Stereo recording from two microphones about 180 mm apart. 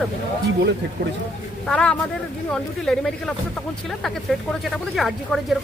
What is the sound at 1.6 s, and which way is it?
Speech, 5° left (ahead or behind).